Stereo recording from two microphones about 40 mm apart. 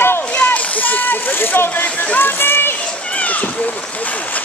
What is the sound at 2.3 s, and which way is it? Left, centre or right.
Speech, left.